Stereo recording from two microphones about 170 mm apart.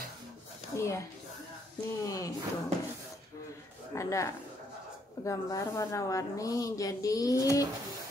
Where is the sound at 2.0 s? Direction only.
20° left (ahead or behind).